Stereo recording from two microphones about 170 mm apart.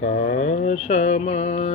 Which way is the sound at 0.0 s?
50° left (ahead or behind).